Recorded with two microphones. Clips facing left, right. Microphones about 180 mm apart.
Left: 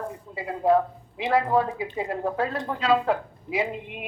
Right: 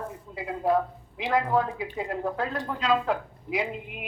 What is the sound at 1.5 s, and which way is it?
Speech, 25° left (ahead or behind).